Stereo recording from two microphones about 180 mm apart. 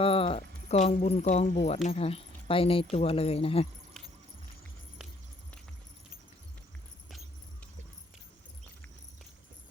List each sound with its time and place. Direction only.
0.0 s speech: 30° left (ahead or behind)